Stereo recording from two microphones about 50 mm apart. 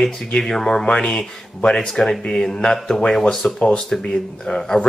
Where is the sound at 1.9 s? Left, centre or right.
Centre.